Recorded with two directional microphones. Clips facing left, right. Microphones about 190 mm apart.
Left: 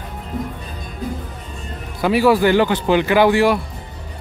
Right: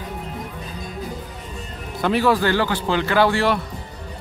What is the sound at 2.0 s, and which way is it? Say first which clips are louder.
A man's voice: left 4 dB; 10° left (ahead or behind).